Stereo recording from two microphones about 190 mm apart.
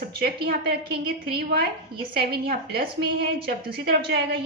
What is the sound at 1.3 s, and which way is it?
A woman's voice, 55° right (ahead or behind).